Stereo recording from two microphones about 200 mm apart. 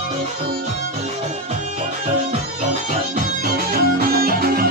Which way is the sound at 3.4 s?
45° right (ahead or behind).